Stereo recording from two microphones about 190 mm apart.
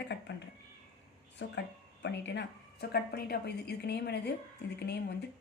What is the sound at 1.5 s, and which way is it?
Speech, 65° left (ahead or behind).